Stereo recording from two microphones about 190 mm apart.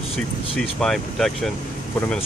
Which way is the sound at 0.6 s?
Centre (ahead or behind).